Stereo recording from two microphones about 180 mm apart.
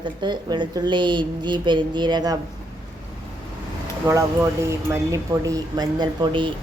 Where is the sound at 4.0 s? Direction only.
15° right (ahead or behind).